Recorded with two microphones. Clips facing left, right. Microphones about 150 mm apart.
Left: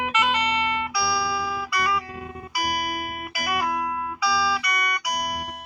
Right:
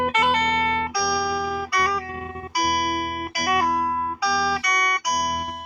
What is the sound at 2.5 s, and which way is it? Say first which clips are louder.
Music: right 4 dB; 35° right (ahead or behind).